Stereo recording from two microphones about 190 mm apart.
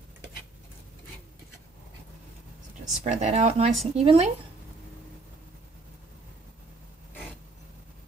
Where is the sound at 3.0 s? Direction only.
35° right (ahead or behind).